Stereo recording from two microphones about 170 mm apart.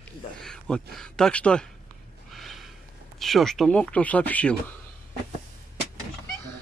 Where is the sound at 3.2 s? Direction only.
Centre (ahead or behind).